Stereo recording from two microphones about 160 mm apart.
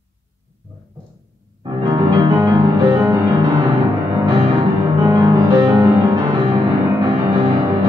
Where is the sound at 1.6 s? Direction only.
30° right (ahead or behind).